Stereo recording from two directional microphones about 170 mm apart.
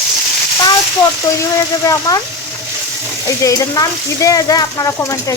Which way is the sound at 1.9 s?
20° left (ahead or behind).